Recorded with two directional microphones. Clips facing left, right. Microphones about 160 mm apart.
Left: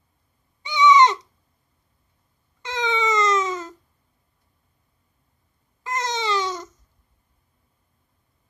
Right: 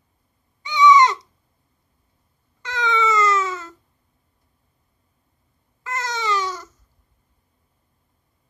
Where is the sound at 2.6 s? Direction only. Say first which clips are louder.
Right 1 dB; 20° left (ahead or behind).